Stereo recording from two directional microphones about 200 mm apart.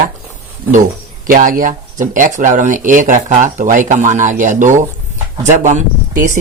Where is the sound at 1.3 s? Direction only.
45° right (ahead or behind).